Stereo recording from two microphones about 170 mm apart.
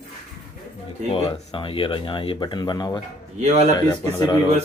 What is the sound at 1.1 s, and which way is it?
Speech, 35° left (ahead or behind).